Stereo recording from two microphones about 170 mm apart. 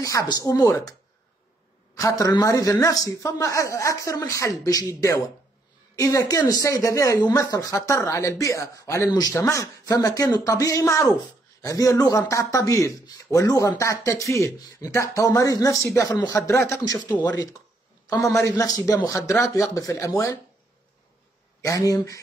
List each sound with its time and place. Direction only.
0.0 s a man's voice: 20° left (ahead or behind)
2.0 s a man's voice: 20° left (ahead or behind)
21.5 s a man's voice: 20° left (ahead or behind)